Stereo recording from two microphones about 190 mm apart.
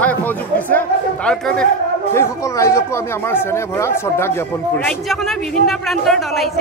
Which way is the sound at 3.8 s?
15° left (ahead or behind).